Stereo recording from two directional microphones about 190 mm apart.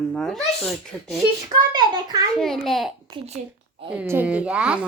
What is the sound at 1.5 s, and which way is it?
Speech, 20° right (ahead or behind).